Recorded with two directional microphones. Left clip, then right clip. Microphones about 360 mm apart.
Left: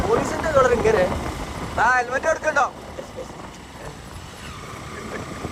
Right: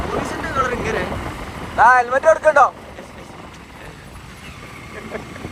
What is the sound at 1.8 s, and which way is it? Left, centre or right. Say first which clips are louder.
Speech: right 7 dB; centre.